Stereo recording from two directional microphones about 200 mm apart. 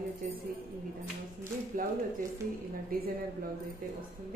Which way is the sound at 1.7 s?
45° right (ahead or behind).